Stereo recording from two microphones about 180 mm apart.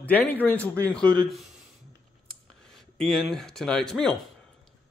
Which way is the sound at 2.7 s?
Centre (ahead or behind).